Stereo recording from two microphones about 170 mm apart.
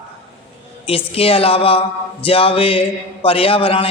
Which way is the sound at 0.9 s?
35° left (ahead or behind).